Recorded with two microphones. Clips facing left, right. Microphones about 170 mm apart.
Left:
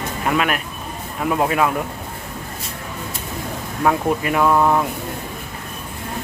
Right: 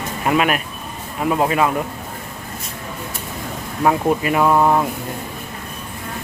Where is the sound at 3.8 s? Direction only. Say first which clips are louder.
Right 2 dB; 10° right (ahead or behind).